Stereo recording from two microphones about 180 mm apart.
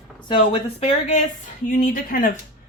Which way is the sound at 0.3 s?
30° left (ahead or behind).